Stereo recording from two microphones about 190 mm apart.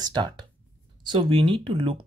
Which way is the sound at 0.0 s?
20° right (ahead or behind).